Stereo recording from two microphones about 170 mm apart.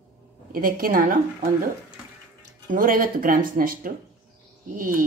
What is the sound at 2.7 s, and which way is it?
Speech, 55° right (ahead or behind).